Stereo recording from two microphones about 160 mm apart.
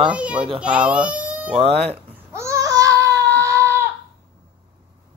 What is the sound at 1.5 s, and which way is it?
Speech, 40° right (ahead or behind).